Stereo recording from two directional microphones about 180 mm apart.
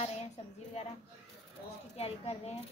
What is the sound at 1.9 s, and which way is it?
Speech, 35° left (ahead or behind).